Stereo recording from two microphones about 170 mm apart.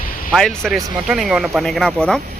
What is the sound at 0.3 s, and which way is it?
Speech, centre (ahead or behind).